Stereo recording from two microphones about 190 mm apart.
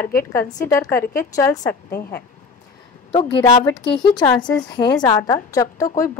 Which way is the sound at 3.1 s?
25° left (ahead or behind).